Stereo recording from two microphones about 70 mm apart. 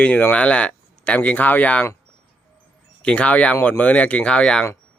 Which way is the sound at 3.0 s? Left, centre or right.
Centre.